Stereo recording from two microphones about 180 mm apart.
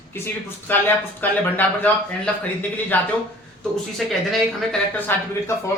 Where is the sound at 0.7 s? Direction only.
10° left (ahead or behind).